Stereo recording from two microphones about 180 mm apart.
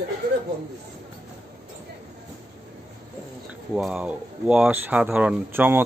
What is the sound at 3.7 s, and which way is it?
Speech, 5° right (ahead or behind).